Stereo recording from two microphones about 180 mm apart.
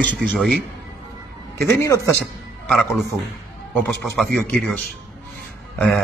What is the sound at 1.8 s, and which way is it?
Speech, 15° left (ahead or behind).